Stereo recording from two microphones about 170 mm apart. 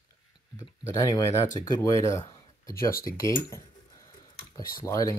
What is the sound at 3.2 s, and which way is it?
Speech, 20° left (ahead or behind).